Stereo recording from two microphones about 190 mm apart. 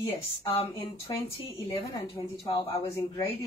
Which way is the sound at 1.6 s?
30° left (ahead or behind).